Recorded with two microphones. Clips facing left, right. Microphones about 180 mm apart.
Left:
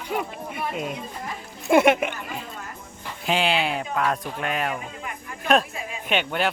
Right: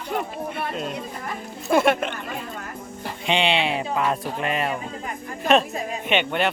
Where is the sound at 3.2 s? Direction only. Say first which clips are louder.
Right 1 dB; centre (ahead or behind).